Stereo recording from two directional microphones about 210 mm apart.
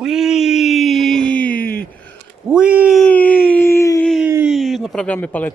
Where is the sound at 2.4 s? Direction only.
5° right (ahead or behind); by 4.1 s 15° left (ahead or behind).